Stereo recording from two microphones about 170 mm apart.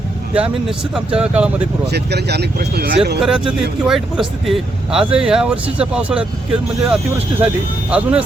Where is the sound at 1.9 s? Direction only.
75° right (ahead or behind).